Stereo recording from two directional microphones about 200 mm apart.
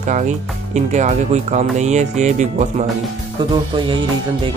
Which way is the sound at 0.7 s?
35° right (ahead or behind).